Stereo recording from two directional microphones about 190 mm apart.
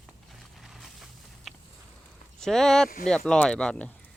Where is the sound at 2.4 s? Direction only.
Centre (ahead or behind).